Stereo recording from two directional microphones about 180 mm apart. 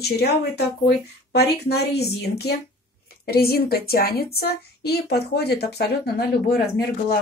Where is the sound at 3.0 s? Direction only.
60° left (ahead or behind).